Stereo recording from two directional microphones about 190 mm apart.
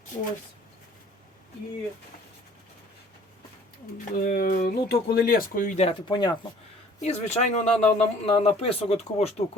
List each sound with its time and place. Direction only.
4.1 s speech: 50° left (ahead or behind); by 6.3 s 25° left (ahead or behind)
7.0 s speech: 35° left (ahead or behind)